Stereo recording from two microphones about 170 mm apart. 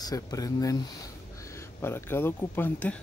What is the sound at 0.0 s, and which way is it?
Speech, 20° left (ahead or behind).